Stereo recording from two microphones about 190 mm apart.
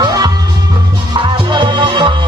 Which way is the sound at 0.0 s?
20° right (ahead or behind).